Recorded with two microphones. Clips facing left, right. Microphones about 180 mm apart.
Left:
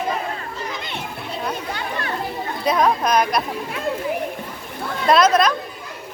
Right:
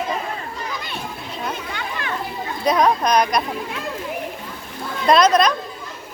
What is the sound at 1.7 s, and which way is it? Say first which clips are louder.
Children playing: left 1 dB; 35° left (ahead or behind).